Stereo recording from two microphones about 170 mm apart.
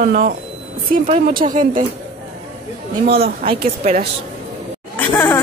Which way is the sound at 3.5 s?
35° right (ahead or behind).